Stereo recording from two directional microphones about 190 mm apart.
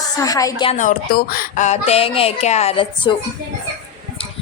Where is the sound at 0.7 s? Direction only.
45° left (ahead or behind); by 3.2 s 25° left (ahead or behind).